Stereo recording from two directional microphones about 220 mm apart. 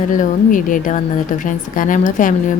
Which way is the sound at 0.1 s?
35° left (ahead or behind).